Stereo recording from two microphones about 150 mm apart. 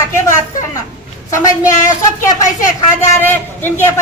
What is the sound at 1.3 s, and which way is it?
Speech, 20° left (ahead or behind).